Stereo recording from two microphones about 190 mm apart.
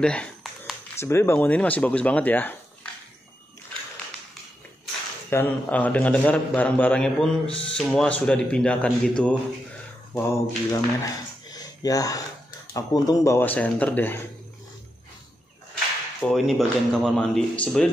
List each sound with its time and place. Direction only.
0.0 s a sound: 5° left (ahead or behind)
0.9 s speech: 15° left (ahead or behind)
5.3 s a man's voice: 10° left (ahead or behind)
11.5 s a sound: 20° left (ahead or behind)
12.7 s speech: 20° left (ahead or behind)
16.2 s a man's voice: centre (ahead or behind)